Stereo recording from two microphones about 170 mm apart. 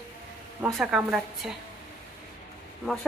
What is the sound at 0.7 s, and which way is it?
Speech, 5° right (ahead or behind).